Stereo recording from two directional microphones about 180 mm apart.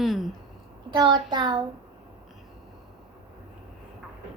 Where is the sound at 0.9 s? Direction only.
25° right (ahead or behind).